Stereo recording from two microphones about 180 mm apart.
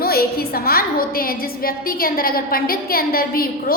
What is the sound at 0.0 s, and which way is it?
A woman's voice, 55° left (ahead or behind).